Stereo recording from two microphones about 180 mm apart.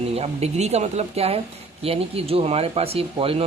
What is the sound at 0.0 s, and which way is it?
Speech, 35° right (ahead or behind).